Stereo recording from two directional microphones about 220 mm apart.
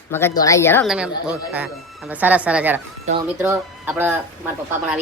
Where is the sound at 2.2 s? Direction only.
5° right (ahead or behind).